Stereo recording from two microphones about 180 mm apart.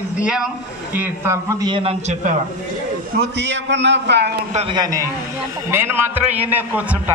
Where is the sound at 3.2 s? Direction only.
75° right (ahead or behind).